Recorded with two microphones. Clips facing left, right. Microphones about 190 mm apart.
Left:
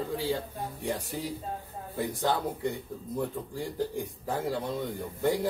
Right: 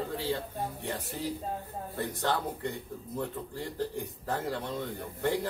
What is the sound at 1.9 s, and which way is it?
Speech, 10° left (ahead or behind).